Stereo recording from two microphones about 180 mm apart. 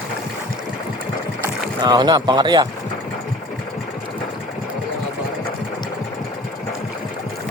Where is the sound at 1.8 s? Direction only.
25° right (ahead or behind).